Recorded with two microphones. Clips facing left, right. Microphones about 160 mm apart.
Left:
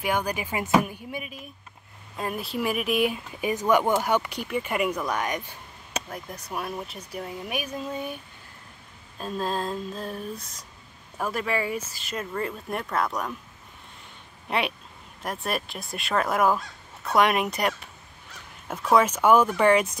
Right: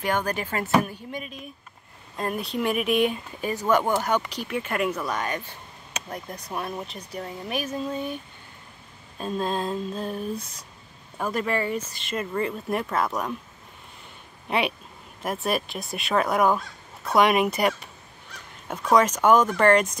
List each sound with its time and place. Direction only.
0.0 s speech: 10° left (ahead or behind)
2.1 s fowl: 5° left (ahead or behind)
4.6 s speech: 10° left (ahead or behind)
9.2 s fowl: centre (ahead or behind)
14.5 s fowl: centre (ahead or behind)
18.7 s speech: 5° left (ahead or behind)